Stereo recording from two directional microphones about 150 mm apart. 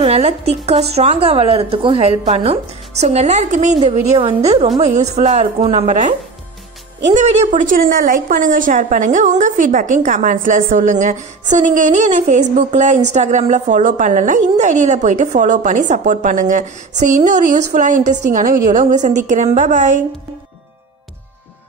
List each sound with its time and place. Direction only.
0.0 s a woman's voice: 45° right (ahead or behind)
7.2 s a woman's voice: 50° right (ahead or behind)